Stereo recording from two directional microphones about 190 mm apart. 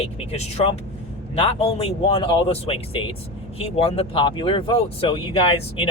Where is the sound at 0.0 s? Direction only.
35° left (ahead or behind).